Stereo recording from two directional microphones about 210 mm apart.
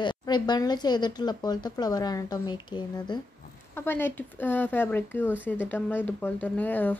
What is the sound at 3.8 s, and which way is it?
Speech, 10° left (ahead or behind).